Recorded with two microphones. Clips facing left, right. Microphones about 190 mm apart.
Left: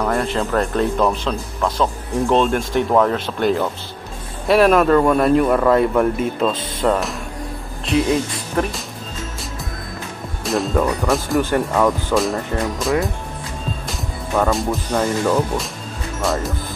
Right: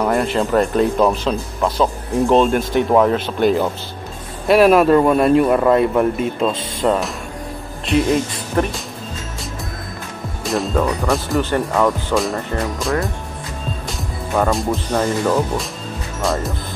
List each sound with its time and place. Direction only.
0.0 s speech: 5° right (ahead or behind)
8.6 s speech: centre (ahead or behind)
10.4 s speech: centre (ahead or behind)